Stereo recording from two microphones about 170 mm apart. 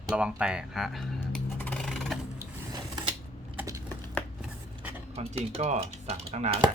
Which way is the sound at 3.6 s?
20° right (ahead or behind).